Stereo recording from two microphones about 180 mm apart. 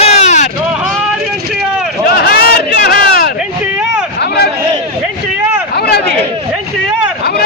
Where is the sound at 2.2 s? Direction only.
60° left (ahead or behind).